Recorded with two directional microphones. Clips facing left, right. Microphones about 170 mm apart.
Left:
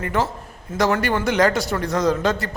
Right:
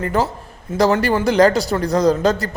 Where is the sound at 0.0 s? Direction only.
35° right (ahead or behind).